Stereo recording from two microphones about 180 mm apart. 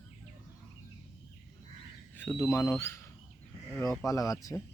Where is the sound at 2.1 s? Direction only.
10° left (ahead or behind).